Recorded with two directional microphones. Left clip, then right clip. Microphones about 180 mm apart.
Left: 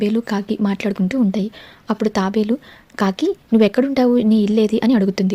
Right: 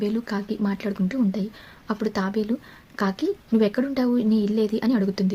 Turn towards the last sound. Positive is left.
turn(degrees=45)  # may be behind; listen again after turning